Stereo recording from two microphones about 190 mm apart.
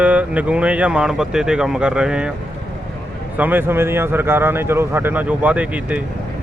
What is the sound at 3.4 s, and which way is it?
Speech, 10° right (ahead or behind).